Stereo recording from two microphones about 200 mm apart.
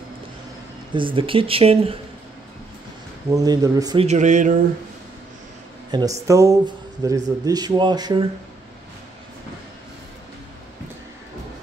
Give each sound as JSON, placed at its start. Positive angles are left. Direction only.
{"t": 0.9, "sound": "speech", "side_deg": -25}
{"t": 3.3, "sound": "speech", "side_deg": -15}
{"t": 4.0, "sound": "mantra", "side_deg": -35}
{"t": 5.9, "sound": "speech", "side_deg": -20}